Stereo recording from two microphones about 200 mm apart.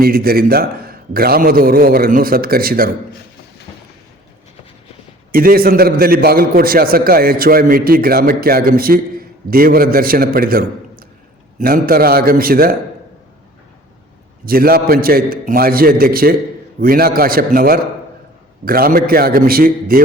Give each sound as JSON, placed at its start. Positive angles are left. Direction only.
{"t": 0.0, "sound": "a man's voice", "side_deg": -50}
{"t": 5.3, "sound": "a man's voice", "side_deg": -45}
{"t": 14.4, "sound": "a man's voice", "side_deg": -45}